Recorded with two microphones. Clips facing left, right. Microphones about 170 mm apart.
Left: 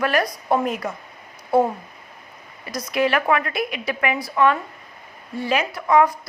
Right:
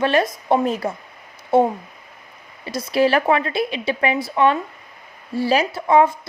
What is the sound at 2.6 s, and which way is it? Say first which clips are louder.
A woman's voice: right 4 dB; 30° right (ahead or behind).